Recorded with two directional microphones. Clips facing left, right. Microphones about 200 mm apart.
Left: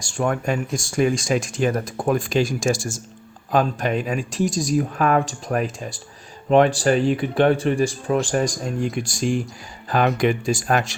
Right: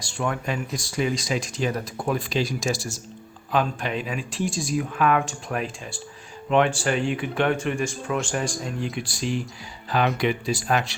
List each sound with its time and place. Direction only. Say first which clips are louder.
0.0 s speech: left 5 dB; 45° left (ahead or behind)